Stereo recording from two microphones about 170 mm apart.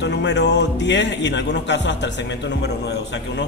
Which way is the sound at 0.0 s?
90° left.